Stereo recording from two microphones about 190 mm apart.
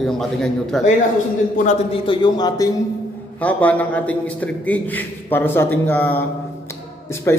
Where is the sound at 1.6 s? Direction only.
30° left (ahead or behind).